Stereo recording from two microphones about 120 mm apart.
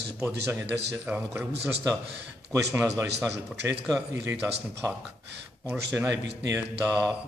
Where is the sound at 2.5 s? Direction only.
20° right (ahead or behind).